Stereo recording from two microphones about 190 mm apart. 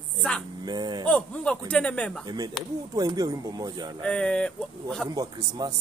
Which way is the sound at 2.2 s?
20° right (ahead or behind).